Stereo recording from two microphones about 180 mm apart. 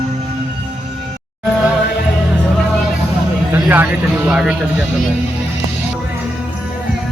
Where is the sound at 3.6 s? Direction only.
10° right (ahead or behind).